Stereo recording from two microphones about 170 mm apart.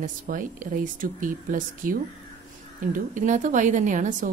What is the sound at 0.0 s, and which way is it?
A woman's voice, 50° right (ahead or behind).